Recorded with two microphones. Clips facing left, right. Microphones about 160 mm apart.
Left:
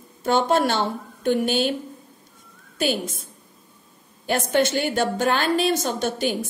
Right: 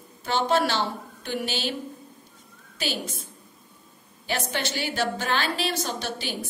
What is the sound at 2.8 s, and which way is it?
Speech, 50° left (ahead or behind).